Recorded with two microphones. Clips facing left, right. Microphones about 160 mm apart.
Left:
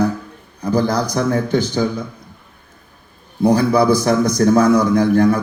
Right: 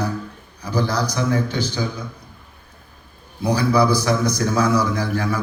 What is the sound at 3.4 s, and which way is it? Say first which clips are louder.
A man's voice: left 4 dB; 50° left (ahead or behind).